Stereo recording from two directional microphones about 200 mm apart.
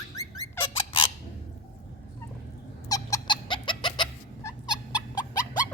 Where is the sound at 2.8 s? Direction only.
15° left (ahead or behind).